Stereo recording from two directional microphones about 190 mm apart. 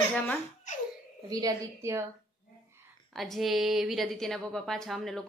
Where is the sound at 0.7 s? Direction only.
40° left (ahead or behind).